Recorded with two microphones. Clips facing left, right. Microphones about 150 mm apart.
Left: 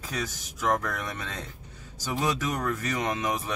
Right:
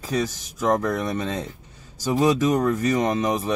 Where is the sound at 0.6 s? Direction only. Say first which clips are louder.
Right 6 dB; 20° right (ahead or behind).